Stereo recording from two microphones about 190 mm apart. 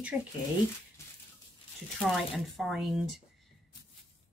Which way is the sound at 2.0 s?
Centre (ahead or behind).